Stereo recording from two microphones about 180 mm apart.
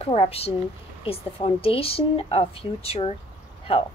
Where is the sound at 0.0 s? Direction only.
35° left (ahead or behind).